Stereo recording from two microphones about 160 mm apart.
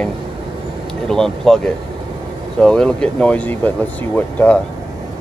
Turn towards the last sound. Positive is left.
turn(degrees=10)  # may be behind; listen again after turning